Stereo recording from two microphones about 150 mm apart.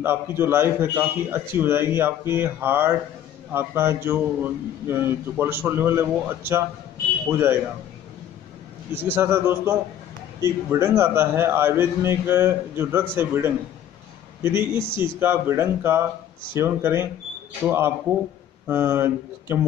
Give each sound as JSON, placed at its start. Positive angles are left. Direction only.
{"t": 0.0, "sound": "a man's voice", "side_deg": -15}
{"t": 8.9, "sound": "a man's voice", "side_deg": -15}